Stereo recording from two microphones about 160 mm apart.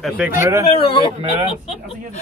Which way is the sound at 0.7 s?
40° left (ahead or behind).